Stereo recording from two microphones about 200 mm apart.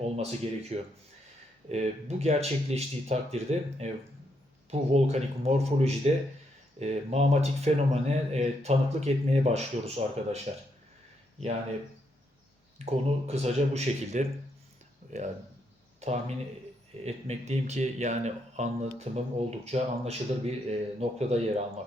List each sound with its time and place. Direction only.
0.2 s speech: 30° right (ahead or behind)
12.8 s a man's voice: 30° right (ahead or behind)